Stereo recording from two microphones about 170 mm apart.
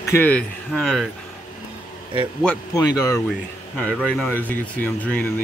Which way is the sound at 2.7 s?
20° left (ahead or behind).